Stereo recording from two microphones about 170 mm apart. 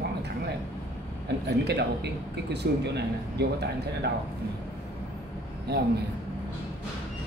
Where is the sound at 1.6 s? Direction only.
80° right.